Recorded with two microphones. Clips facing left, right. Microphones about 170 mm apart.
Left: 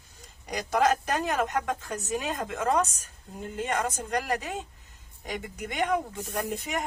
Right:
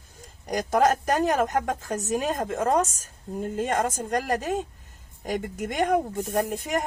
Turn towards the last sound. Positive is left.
turn(degrees=-45)  # may be behind; listen again after turning